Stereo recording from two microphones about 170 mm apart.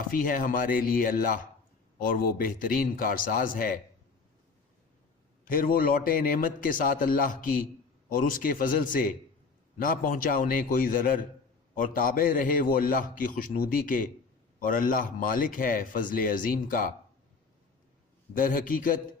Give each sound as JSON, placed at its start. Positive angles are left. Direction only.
{"t": 0.1, "sound": "speech", "side_deg": 55}
{"t": 5.5, "sound": "speech", "side_deg": 55}
{"t": 18.3, "sound": "a man's voice", "side_deg": 50}